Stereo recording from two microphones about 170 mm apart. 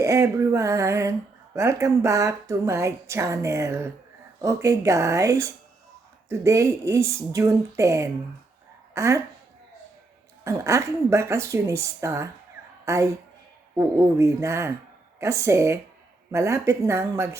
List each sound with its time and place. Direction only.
0.0 s speech: 15° right (ahead or behind)
10.4 s a woman's voice: 15° right (ahead or behind)